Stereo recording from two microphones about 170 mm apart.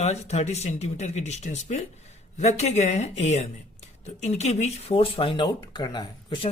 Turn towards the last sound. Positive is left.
turn(degrees=25)  # may be behind; listen again after turning